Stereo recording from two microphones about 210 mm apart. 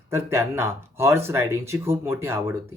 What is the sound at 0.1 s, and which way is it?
Speech, 10° right (ahead or behind).